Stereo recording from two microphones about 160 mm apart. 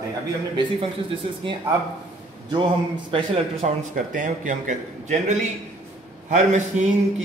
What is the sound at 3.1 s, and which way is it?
Speech, 35° right (ahead or behind).